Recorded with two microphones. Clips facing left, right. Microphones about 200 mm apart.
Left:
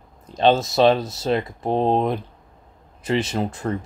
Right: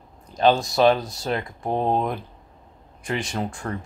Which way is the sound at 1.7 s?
25° left (ahead or behind).